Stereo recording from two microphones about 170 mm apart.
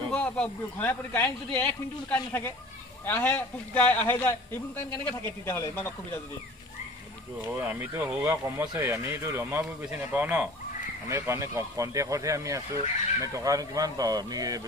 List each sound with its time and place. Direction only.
0.1 s a man's voice: 5° left (ahead or behind)
7.4 s speech: 15° right (ahead or behind)